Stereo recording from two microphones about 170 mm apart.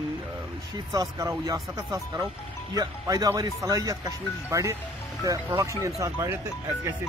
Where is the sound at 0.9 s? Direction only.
20° right (ahead or behind).